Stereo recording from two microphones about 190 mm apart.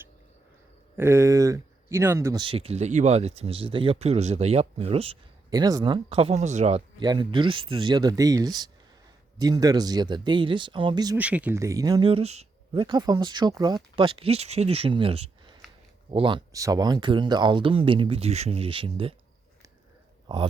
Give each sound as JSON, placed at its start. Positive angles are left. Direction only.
{"t": 0.9, "sound": "speech", "side_deg": -15}
{"t": 5.5, "sound": "speech", "side_deg": -20}
{"t": 7.0, "sound": "speech", "side_deg": -25}
{"t": 11.2, "sound": "speech", "side_deg": -5}
{"t": 20.2, "sound": "speech", "side_deg": -25}